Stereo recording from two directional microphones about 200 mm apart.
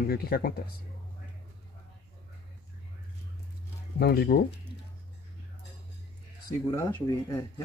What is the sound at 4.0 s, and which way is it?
Speech, 50° left (ahead or behind).